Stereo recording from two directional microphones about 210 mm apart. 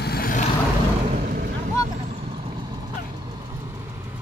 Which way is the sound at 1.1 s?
40° right (ahead or behind).